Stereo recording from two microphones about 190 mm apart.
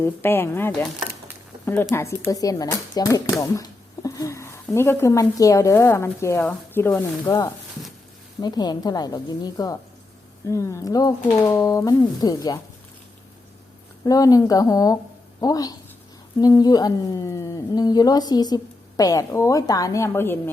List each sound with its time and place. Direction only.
0.0 s speech: 10° left (ahead or behind)
14.0 s speech: 20° left (ahead or behind)